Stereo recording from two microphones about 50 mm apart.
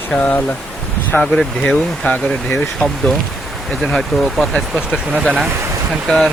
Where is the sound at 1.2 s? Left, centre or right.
Centre.